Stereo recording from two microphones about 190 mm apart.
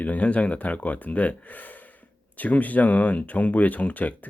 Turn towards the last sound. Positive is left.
turn(degrees=10)  # may be behind; listen again after turning